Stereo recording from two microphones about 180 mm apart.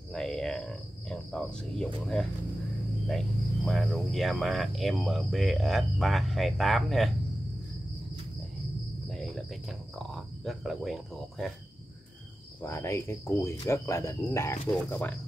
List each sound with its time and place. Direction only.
0.1 s cricket: 5° left (ahead or behind)
3.1 s speech: centre (ahead or behind)
9.1 s cricket: centre (ahead or behind)
12.6 s speech: 15° left (ahead or behind)